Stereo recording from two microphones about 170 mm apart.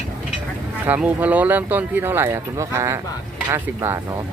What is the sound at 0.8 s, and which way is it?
Speech, 10° right (ahead or behind).